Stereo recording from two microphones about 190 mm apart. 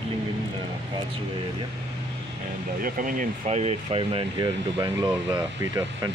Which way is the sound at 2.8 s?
45° right (ahead or behind).